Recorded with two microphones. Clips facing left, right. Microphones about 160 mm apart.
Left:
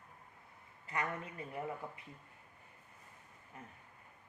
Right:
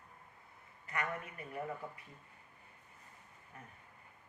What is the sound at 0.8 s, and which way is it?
Speech, 25° left (ahead or behind).